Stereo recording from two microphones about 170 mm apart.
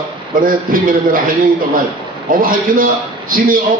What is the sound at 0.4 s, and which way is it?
Speech, 55° right (ahead or behind).